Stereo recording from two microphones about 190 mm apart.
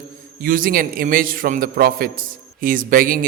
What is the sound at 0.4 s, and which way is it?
A man's voice, 45° right (ahead or behind).